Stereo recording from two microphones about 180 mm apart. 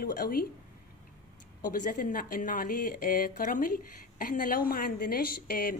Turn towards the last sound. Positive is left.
turn(degrees=55)  # may be behind; listen again after turning